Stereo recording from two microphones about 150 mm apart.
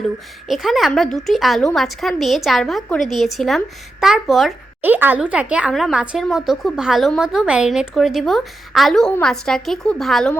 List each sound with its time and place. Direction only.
0.4 s a woman's voice: centre (ahead or behind)
4.8 s a woman's voice: 10° right (ahead or behind)